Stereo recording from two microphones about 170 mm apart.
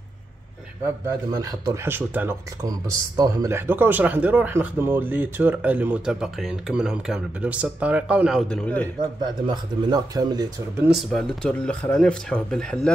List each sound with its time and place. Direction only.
0.8 s speech: 15° right (ahead or behind); by 8.8 s 5° left (ahead or behind)
9.2 s speech: 25° right (ahead or behind)
10.8 s speech: centre (ahead or behind)